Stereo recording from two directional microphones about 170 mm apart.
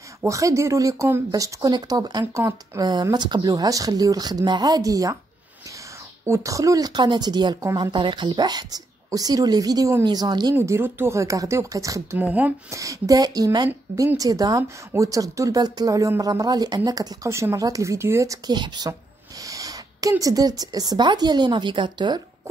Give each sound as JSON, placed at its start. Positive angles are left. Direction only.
{"t": 0.2, "sound": "speech", "side_deg": -20}
{"t": 6.2, "sound": "a woman's voice", "side_deg": -15}